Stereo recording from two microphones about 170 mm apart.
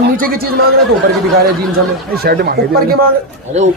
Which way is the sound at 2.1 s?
65° right (ahead or behind).